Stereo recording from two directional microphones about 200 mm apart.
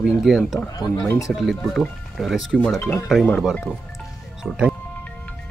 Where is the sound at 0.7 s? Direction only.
15° left (ahead or behind).